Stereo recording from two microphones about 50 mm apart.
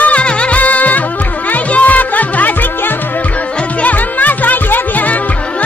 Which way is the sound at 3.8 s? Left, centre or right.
Left.